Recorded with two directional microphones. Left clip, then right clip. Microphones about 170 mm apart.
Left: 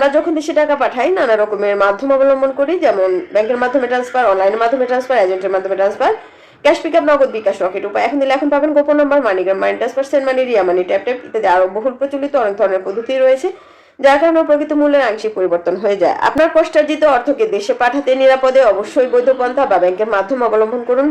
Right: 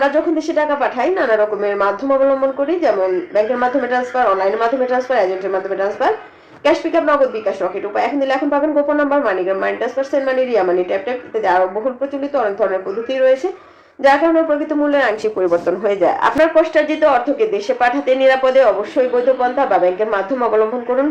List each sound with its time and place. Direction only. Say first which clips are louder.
0.0 s speech: left 2 dB; 5° right (ahead or behind)